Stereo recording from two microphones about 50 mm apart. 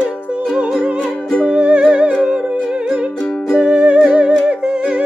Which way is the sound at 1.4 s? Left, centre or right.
Right.